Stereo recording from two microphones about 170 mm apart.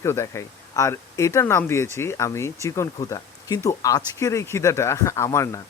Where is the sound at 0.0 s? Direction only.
15° left (ahead or behind).